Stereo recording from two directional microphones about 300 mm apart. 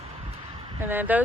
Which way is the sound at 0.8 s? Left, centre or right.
Centre.